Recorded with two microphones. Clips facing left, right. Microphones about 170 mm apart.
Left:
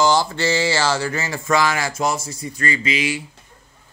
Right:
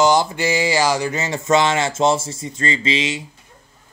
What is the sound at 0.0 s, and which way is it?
Speech, 20° right (ahead or behind).